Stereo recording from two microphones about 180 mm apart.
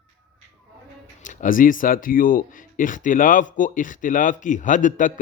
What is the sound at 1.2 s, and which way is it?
Speech, 45° left (ahead or behind).